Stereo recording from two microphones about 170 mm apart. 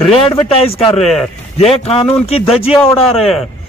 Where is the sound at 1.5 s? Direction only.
35° left (ahead or behind).